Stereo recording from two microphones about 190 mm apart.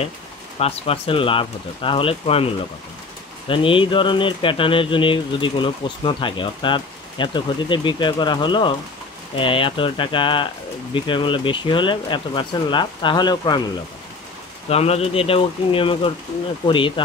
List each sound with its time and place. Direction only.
0.6 s speech: 30° left (ahead or behind)
14.7 s speech: 30° left (ahead or behind)